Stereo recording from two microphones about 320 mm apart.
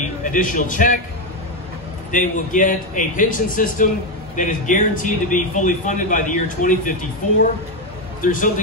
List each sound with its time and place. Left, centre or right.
0.2 s a man's voice: left
2.0 s a man's voice: left
8.2 s a man's voice: left